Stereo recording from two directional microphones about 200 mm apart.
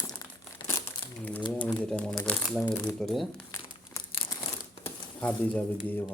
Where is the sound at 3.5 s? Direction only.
15° left (ahead or behind).